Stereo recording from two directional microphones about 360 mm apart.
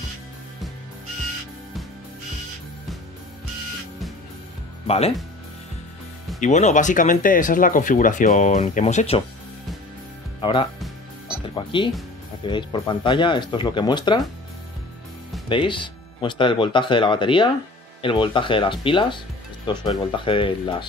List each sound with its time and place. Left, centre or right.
4.8 s speech: centre
6.4 s speech: centre
10.4 s speech: centre
10.8 s music: centre
11.5 s speech: centre
15.4 s speech: centre